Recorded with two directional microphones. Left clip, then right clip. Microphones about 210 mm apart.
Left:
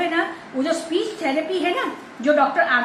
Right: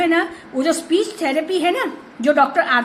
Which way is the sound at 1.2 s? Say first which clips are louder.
Right 3 dB; 55° right (ahead or behind).